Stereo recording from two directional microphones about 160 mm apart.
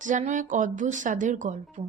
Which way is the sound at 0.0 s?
50° right (ahead or behind).